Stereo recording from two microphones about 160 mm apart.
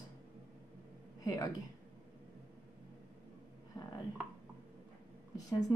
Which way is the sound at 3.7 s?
15° left (ahead or behind).